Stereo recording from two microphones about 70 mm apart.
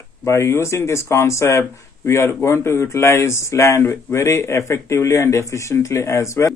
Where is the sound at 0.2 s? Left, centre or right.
Left.